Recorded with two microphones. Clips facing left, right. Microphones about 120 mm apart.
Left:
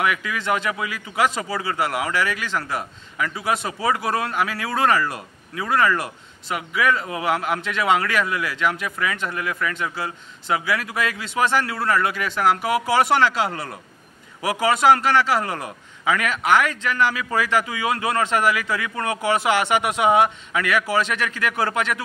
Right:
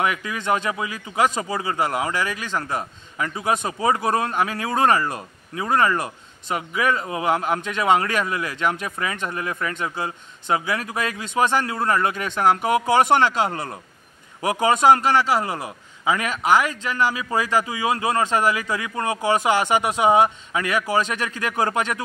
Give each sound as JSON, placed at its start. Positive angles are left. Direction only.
{"t": 0.0, "sound": "a man's voice", "side_deg": -30}
{"t": 19.7, "sound": "speech", "side_deg": -35}
{"t": 20.2, "sound": "speech", "side_deg": -25}
{"t": 20.9, "sound": "speech", "side_deg": -40}